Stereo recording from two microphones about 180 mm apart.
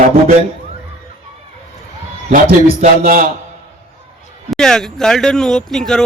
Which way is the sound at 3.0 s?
50° right (ahead or behind).